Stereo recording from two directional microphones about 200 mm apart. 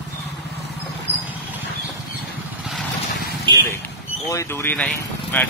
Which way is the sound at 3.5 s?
25° right (ahead or behind).